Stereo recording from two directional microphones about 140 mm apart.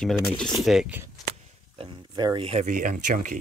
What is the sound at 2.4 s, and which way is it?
Speech, 60° right (ahead or behind).